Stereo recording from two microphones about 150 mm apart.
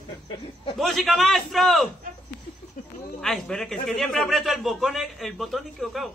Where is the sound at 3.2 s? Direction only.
5° left (ahead or behind).